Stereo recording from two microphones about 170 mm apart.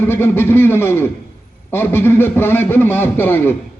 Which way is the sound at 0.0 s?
15° left (ahead or behind).